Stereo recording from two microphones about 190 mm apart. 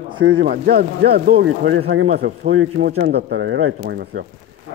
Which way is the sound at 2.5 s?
90° right.